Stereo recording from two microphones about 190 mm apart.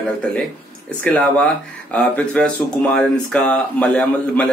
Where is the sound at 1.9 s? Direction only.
5° left (ahead or behind).